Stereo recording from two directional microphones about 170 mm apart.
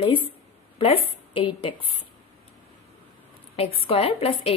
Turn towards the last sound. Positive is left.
turn(degrees=35)  # may be behind; listen again after turning